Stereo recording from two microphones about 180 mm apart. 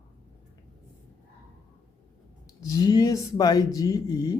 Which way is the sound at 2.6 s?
20° left (ahead or behind).